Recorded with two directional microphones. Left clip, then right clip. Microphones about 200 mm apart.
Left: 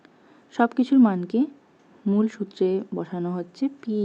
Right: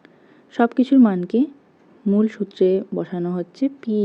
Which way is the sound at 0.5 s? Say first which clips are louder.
Right 4 dB; 10° right (ahead or behind).